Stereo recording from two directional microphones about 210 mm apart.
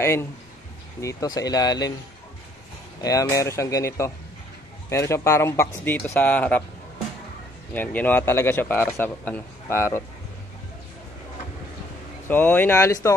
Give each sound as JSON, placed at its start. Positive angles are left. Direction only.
{"t": 0.0, "sound": "a man's voice", "side_deg": 10}
{"t": 3.0, "sound": "a man's voice", "side_deg": 15}
{"t": 7.7, "sound": "a man's voice", "side_deg": 10}
{"t": 12.3, "sound": "a man's voice", "side_deg": 10}